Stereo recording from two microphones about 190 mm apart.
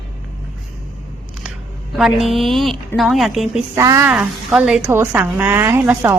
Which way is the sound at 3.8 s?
15° right (ahead or behind).